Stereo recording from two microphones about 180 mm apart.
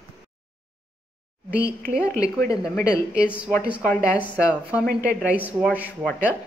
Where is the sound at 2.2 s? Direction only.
20° left (ahead or behind).